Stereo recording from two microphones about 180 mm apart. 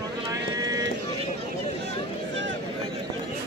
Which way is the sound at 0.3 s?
20° right (ahead or behind).